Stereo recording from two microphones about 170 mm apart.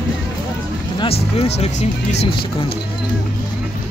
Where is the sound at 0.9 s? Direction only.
35° left (ahead or behind).